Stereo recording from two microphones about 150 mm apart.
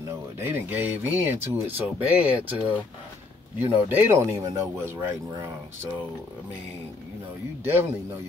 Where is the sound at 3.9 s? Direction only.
15° right (ahead or behind).